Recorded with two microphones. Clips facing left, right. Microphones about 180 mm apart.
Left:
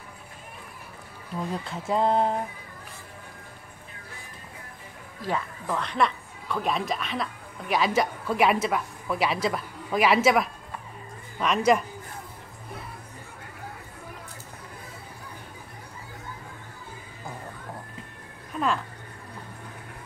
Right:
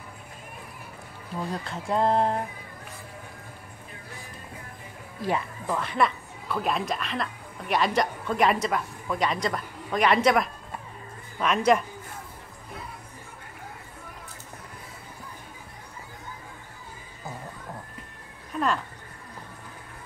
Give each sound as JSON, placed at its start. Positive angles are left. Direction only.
{"t": 1.5, "sound": "speech", "side_deg": 0}
{"t": 5.2, "sound": "speech", "side_deg": -15}
{"t": 5.8, "sound": "a woman's voice", "side_deg": -5}
{"t": 18.5, "sound": "a sound", "side_deg": 0}